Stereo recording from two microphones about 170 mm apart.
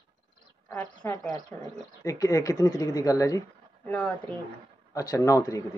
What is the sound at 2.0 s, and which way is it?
Speech, 20° left (ahead or behind).